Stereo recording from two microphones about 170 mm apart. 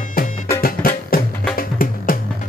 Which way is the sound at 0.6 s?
60° left (ahead or behind).